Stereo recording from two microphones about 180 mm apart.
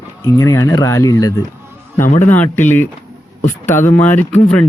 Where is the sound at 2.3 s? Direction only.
10° left (ahead or behind).